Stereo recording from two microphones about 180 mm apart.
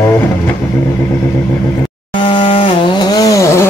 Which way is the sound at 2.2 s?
25° left (ahead or behind).